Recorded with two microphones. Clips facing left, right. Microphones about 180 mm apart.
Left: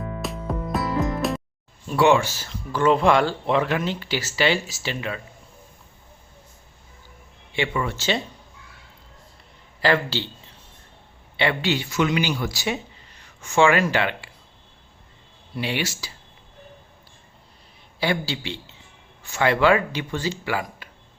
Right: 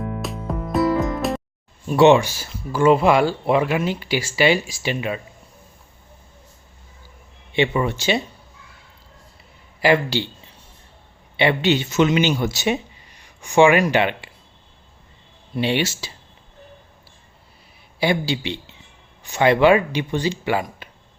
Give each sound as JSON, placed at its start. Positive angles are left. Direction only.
{"t": 0.2, "sound": "music", "side_deg": 0}
{"t": 1.9, "sound": "speech", "side_deg": -20}
{"t": 7.5, "sound": "speech", "side_deg": -25}
{"t": 9.8, "sound": "speech", "side_deg": -15}
{"t": 11.3, "sound": "speech", "side_deg": -20}
{"t": 15.5, "sound": "speech", "side_deg": -25}
{"t": 18.0, "sound": "speech", "side_deg": -15}